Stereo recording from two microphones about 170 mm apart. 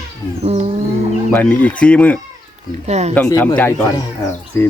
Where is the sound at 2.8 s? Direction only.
40° right (ahead or behind).